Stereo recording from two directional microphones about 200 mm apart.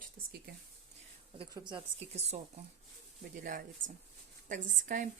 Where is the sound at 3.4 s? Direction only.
40° right (ahead or behind).